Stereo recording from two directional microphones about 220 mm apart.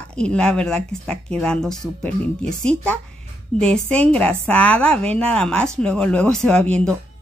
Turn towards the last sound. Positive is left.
turn(degrees=5)  # may be behind; listen again after turning